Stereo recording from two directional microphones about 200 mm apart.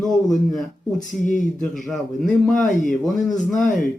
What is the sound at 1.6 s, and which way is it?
Speech, centre (ahead or behind).